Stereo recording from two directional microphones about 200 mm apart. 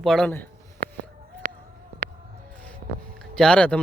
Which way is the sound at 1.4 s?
40° right (ahead or behind).